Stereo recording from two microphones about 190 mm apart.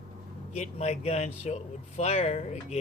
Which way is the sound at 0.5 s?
35° left (ahead or behind).